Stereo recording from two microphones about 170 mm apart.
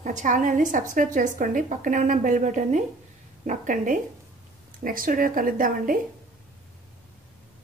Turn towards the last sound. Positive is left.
turn(degrees=-55)  # may be behind; listen again after turning